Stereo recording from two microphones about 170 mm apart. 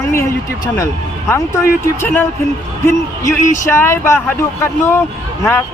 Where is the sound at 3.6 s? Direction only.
15° left (ahead or behind).